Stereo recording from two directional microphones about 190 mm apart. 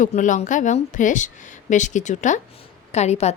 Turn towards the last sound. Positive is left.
turn(degrees=35)  # may be behind; listen again after turning